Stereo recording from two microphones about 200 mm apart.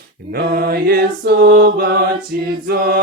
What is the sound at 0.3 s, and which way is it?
Mantra, 50° right (ahead or behind).